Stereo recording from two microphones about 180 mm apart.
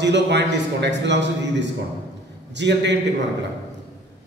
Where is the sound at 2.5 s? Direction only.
75° right (ahead or behind).